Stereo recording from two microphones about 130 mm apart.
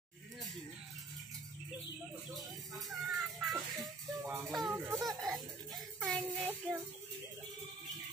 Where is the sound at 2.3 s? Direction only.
Centre (ahead or behind).